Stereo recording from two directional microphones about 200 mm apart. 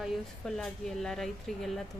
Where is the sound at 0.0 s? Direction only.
Centre (ahead or behind).